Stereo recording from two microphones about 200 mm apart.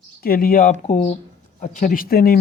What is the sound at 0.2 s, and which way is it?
Speech, 45° left (ahead or behind).